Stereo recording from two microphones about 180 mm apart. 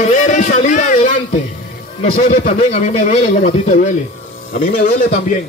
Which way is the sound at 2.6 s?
35° left (ahead or behind).